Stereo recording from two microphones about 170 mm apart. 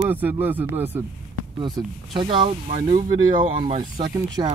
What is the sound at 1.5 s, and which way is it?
Speech, 25° right (ahead or behind).